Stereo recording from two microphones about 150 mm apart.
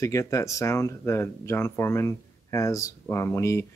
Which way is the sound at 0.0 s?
20° left (ahead or behind).